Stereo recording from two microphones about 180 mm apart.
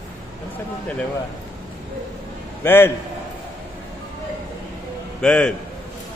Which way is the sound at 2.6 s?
10° left (ahead or behind).